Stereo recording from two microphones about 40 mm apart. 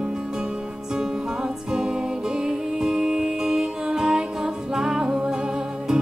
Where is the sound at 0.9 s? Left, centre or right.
Centre.